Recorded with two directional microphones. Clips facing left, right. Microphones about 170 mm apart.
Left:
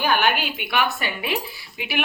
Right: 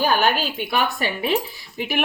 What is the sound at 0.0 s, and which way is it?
Speech, 40° right (ahead or behind).